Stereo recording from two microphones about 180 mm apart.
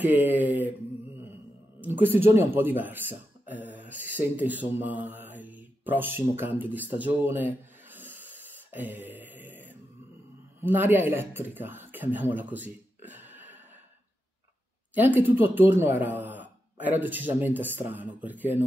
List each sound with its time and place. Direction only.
0.1 s mantra: 10° right (ahead or behind)
1.8 s speech: 10° right (ahead or behind)
3.9 s mantra: 10° right (ahead or behind)
10.6 s speech: 10° right (ahead or behind)
15.0 s speech: 10° right (ahead or behind)